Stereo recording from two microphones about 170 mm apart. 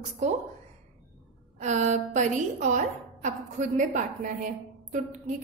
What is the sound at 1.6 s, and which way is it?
A woman's voice, 45° right (ahead or behind).